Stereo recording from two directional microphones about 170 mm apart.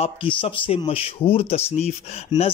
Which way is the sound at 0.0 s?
30° left (ahead or behind).